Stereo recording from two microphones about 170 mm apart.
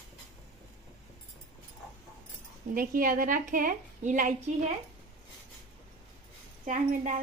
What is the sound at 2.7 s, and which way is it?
A woman's voice, 55° right (ahead or behind).